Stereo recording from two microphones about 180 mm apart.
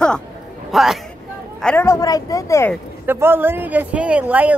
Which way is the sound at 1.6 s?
10° left (ahead or behind).